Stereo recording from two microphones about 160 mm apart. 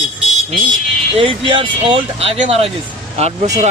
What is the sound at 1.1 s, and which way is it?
A man's voice, 35° right (ahead or behind).